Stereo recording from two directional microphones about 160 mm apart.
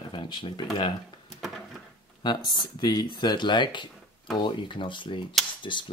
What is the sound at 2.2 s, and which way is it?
Speech, 25° left (ahead or behind).